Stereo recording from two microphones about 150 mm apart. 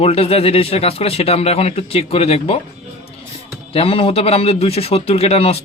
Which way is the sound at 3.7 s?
40° left (ahead or behind).